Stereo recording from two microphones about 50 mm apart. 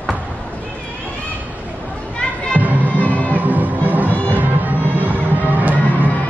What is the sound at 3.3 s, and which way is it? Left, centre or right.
Music, right.